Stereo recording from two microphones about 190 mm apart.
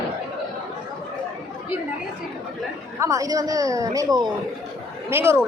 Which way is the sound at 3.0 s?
15° right (ahead or behind).